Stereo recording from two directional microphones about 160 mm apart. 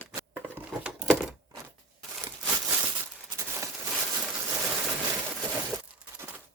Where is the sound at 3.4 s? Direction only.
20° right (ahead or behind).